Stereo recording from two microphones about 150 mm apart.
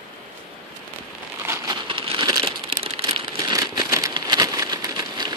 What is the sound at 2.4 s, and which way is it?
Crumpling, 40° right (ahead or behind).